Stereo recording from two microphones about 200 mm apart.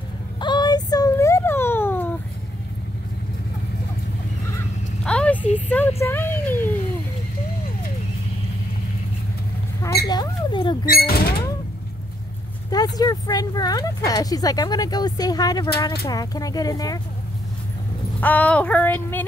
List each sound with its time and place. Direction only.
0.4 s a sound: 20° left (ahead or behind)
5.0 s a sound: 5° left (ahead or behind)
10.0 s rodents: 20° left (ahead or behind)
10.9 s speech: 50° left (ahead or behind)
12.6 s speech: 20° left (ahead or behind)
18.2 s child singing: 10° left (ahead or behind)